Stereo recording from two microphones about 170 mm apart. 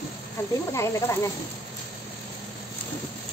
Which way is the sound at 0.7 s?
15° left (ahead or behind).